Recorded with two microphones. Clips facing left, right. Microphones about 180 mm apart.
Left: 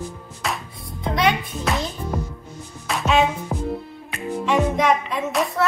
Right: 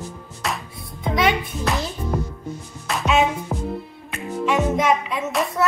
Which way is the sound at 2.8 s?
Centre (ahead or behind).